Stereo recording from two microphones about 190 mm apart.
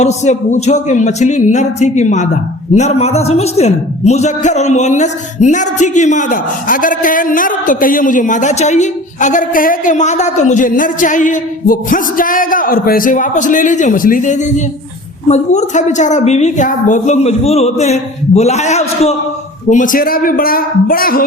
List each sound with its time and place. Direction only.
0.0 s speech: 35° left (ahead or behind)